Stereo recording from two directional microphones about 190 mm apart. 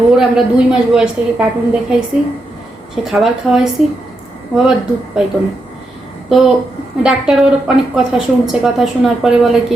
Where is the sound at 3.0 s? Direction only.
Centre (ahead or behind).